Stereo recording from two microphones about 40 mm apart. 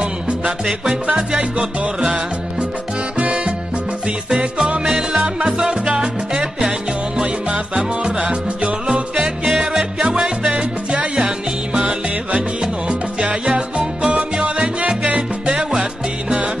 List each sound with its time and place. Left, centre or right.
0.0 s music: right
0.5 s music: centre
1.1 s music: centre
4.8 s music: centre
7.7 s music: right
10.6 s music: right
11.1 s music: centre
12.3 s salsa music: right